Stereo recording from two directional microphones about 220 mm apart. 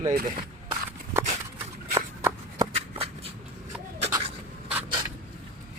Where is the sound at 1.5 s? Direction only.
15° right (ahead or behind).